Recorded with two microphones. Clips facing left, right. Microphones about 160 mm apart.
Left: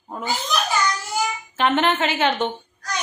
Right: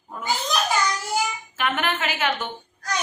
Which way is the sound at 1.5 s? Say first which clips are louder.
Left 6 dB; 30° left (ahead or behind).